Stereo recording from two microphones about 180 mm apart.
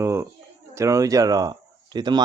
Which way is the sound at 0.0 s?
15° right (ahead or behind).